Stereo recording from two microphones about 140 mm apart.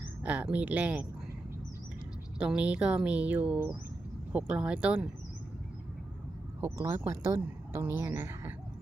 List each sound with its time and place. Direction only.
0.2 s speech: 10° right (ahead or behind)
2.4 s speech: 10° right (ahead or behind)
6.6 s speech: 20° right (ahead or behind)